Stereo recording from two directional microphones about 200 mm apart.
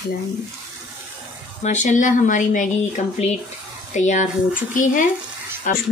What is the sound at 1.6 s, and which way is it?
A woman's voice, 40° left (ahead or behind).